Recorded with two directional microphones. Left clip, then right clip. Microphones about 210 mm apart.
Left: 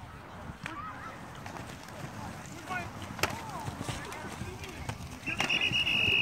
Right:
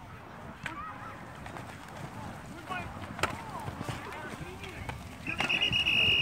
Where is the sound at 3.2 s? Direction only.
Centre (ahead or behind).